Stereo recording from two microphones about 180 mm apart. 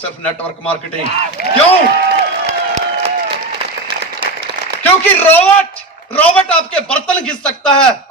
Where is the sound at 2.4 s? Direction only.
40° right (ahead or behind).